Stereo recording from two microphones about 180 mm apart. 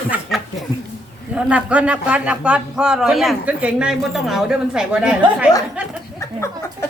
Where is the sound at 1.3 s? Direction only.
5° right (ahead or behind).